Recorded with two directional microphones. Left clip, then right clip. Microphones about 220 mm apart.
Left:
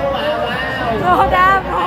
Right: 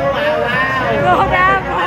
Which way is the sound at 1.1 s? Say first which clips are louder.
Left 2 dB; 10° left (ahead or behind).